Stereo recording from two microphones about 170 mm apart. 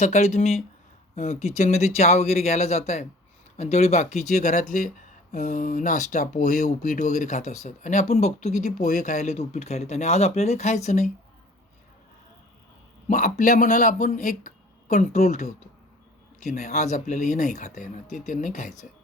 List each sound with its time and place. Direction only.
0.0 s speech: 40° left (ahead or behind)
13.1 s speech: 50° left (ahead or behind)